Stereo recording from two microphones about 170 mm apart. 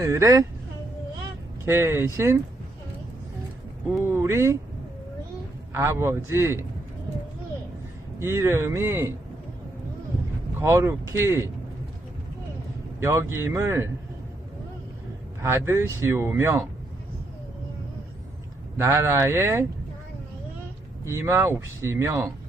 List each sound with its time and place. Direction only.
0.0 s speech: 20° right (ahead or behind)
1.6 s speech: 15° right (ahead or behind)
3.9 s speech: 15° right (ahead or behind)
5.7 s speech: 15° right (ahead or behind)
8.2 s speech: 15° right (ahead or behind)
10.6 s speech: 15° right (ahead or behind)
13.0 s speech: 15° right (ahead or behind)
15.4 s speech: 15° right (ahead or behind)
18.8 s speech: 15° right (ahead or behind)
21.0 s speech: 15° right (ahead or behind)